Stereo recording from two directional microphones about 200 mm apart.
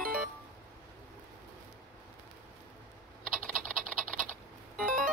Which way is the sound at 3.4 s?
40° right (ahead or behind).